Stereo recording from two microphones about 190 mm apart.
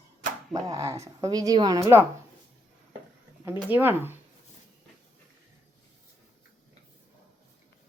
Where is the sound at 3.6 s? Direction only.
10° right (ahead or behind).